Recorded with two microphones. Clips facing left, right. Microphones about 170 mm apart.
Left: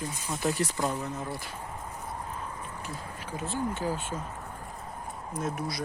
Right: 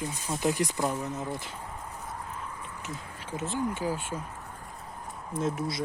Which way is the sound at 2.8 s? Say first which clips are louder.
Left 1 dB; 20° right (ahead or behind).